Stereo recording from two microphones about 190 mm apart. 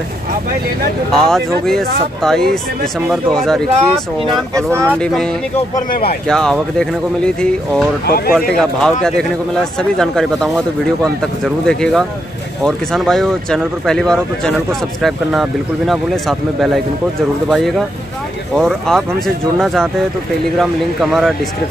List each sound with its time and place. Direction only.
1.1 s speech: 5° left (ahead or behind)
4.3 s speech: 15° right (ahead or behind)
4.9 s speech: 5° left (ahead or behind)
5.9 s speech: 50° left (ahead or behind)
6.2 s speech: 5° left (ahead or behind)